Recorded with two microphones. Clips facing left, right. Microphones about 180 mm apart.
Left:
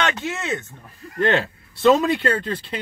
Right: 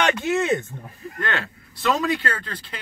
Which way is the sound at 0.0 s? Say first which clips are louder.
Right 4 dB; 15° right (ahead or behind).